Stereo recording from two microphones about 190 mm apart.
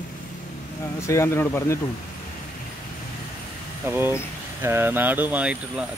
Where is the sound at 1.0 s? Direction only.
15° left (ahead or behind).